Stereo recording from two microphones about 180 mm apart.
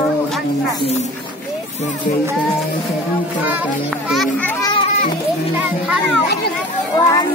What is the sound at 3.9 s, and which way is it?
Speech, centre (ahead or behind).